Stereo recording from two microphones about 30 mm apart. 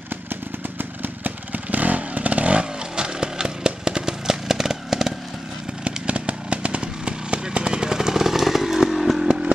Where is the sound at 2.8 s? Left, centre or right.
Right.